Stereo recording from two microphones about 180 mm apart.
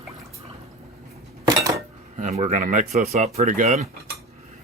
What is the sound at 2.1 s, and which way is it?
Speech, 40° right (ahead or behind).